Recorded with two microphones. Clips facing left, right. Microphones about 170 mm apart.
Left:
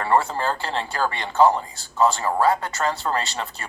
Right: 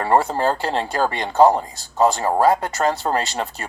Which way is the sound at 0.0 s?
40° right (ahead or behind).